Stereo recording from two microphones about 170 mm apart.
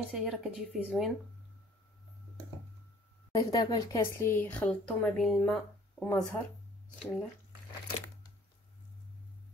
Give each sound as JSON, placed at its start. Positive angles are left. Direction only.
{"t": 0.1, "sound": "speech", "side_deg": -5}
{"t": 3.3, "sound": "speech", "side_deg": 25}
{"t": 4.3, "sound": "speech", "side_deg": 10}